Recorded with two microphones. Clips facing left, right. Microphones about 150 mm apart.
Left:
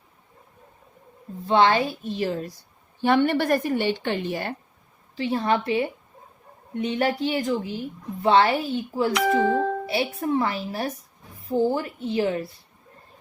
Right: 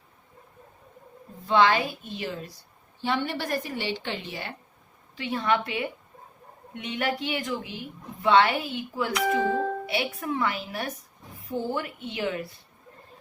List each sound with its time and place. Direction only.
1.5 s a woman's voice: 35° left (ahead or behind)
3.0 s a woman's voice: 55° left (ahead or behind)
5.1 s a woman's voice: 35° left (ahead or behind)